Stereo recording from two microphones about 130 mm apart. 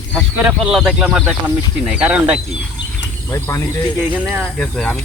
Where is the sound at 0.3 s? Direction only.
5° right (ahead or behind).